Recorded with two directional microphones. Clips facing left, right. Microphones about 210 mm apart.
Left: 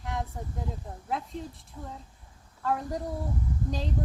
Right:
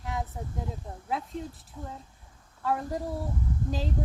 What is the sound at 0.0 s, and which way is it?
Speech, centre (ahead or behind).